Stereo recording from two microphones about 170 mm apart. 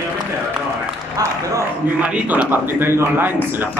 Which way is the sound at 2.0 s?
10° right (ahead or behind).